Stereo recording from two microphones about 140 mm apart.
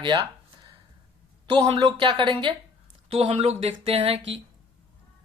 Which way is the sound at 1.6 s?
45° right (ahead or behind).